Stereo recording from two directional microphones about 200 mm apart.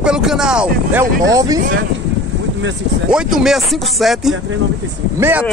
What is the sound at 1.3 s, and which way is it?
Speech, 20° right (ahead or behind).